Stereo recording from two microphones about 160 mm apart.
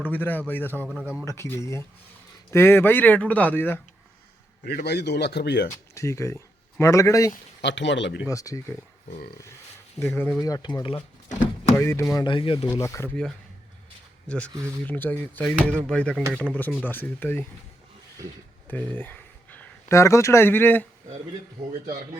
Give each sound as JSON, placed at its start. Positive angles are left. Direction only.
{"t": 0.0, "sound": "speech", "side_deg": 10}
{"t": 4.6, "sound": "speech", "side_deg": 90}
{"t": 5.6, "sound": "speech", "side_deg": 20}
{"t": 7.6, "sound": "speech", "side_deg": 90}
{"t": 8.3, "sound": "speech", "side_deg": 20}
{"t": 10.0, "sound": "speech", "side_deg": 15}
{"t": 11.8, "sound": "speech", "side_deg": 15}
{"t": 12.1, "sound": "speech", "side_deg": 30}
{"t": 12.7, "sound": "speech", "side_deg": 20}
{"t": 14.3, "sound": "speech", "side_deg": 10}
{"t": 18.7, "sound": "speech", "side_deg": 10}